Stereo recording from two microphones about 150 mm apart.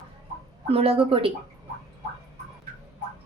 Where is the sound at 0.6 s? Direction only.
40° right (ahead or behind).